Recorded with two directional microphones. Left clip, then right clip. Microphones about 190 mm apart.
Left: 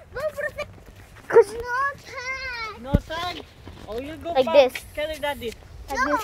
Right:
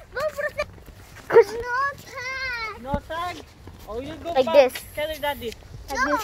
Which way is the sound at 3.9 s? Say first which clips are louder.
Even; 30° left (ahead or behind).